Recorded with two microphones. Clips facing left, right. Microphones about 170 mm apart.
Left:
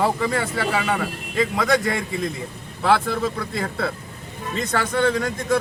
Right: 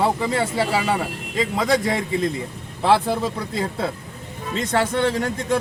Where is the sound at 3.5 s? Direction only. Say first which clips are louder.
Right 1 dB; 20° right (ahead or behind).